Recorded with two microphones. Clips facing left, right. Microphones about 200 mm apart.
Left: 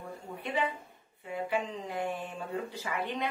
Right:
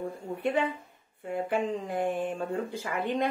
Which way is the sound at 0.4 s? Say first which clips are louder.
Right 5 dB; 50° right (ahead or behind).